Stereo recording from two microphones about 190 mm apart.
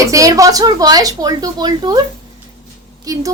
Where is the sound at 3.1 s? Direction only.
20° right (ahead or behind).